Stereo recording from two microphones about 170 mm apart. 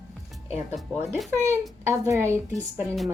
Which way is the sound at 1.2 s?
15° right (ahead or behind).